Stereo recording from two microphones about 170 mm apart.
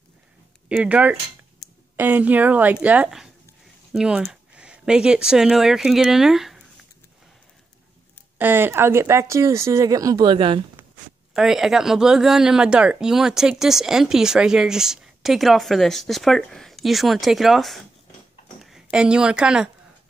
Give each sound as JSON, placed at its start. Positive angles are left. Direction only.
{"t": 0.7, "sound": "speech", "side_deg": -5}
{"t": 1.6, "sound": "a sound", "side_deg": 0}
{"t": 2.0, "sound": "speech", "side_deg": -10}
{"t": 8.4, "sound": "speech", "side_deg": -10}
{"t": 11.3, "sound": "a woman's voice", "side_deg": 0}